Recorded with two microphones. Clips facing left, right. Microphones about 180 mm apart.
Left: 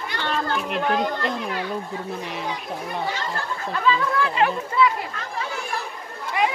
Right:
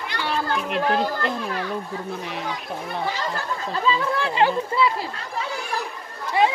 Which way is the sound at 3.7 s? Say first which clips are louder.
Left 1 dB; 30° right (ahead or behind).